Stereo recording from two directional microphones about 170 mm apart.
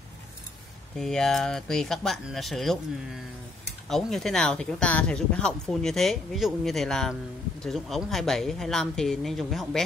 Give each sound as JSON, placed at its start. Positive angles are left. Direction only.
{"t": 0.9, "sound": "speech", "side_deg": 0}